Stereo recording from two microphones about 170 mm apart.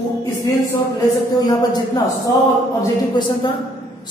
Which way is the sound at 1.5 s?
25° left (ahead or behind).